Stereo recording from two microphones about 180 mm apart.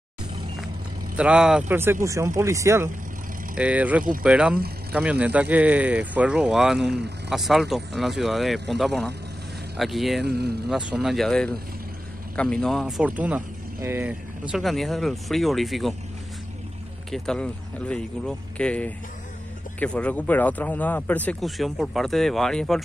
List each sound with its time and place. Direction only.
1.1 s speech: 5° right (ahead or behind)
17.1 s speech: 5° left (ahead or behind)